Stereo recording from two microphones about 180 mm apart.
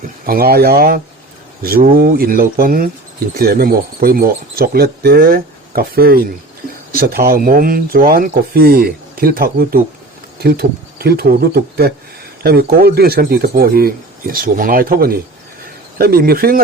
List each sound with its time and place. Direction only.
0.3 s speech: 55° right (ahead or behind)